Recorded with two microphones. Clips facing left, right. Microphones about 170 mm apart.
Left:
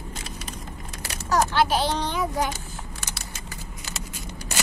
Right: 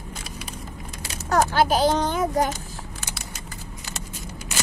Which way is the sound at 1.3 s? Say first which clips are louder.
Right 2 dB; 45° right (ahead or behind).